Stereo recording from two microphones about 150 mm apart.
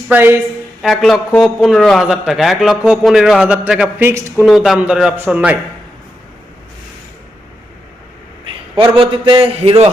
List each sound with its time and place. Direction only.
0.1 s a man's voice: 15° right (ahead or behind)
0.8 s a man's voice: centre (ahead or behind)
8.7 s a man's voice: 35° right (ahead or behind)